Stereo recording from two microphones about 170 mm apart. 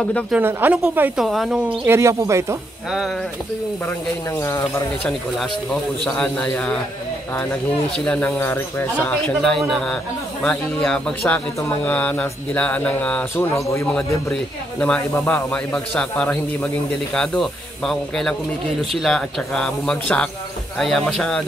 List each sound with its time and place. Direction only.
0.3 s a woman's voice: 10° right (ahead or behind)
1.9 s a woman's voice: 15° right (ahead or behind)
4.4 s a man's voice: 15° left (ahead or behind)
5.4 s a man's voice: 5° left (ahead or behind)
7.9 s a man's voice: 5° left (ahead or behind)
15.0 s a man's voice: 15° left (ahead or behind)